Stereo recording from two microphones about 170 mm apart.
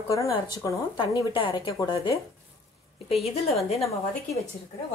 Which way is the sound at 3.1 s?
35° left (ahead or behind).